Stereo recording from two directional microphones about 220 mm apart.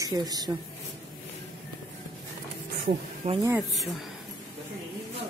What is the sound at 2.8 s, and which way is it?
Speech, 25° right (ahead or behind).